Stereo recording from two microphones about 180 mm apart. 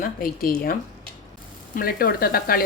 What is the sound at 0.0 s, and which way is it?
Speech, 55° left (ahead or behind).